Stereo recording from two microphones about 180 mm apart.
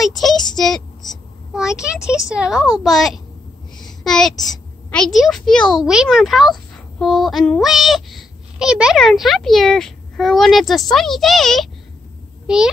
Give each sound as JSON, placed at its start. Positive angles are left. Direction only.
{"t": 0.0, "sound": "child singing", "side_deg": 0}
{"t": 0.6, "sound": "a woman's voice", "side_deg": 5}
{"t": 3.8, "sound": "a sound", "side_deg": 0}
{"t": 4.5, "sound": "a woman's voice", "side_deg": 0}